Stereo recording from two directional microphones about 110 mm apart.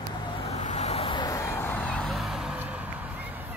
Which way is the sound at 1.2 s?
35° left (ahead or behind).